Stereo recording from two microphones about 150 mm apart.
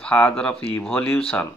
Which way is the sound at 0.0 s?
5° left (ahead or behind).